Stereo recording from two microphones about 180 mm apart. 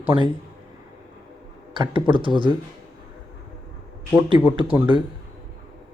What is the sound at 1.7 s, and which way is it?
Speech, 25° right (ahead or behind).